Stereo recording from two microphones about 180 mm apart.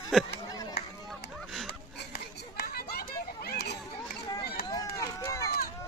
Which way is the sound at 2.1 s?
60° left (ahead or behind).